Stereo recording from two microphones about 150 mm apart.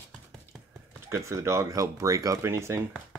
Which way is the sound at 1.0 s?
20° right (ahead or behind).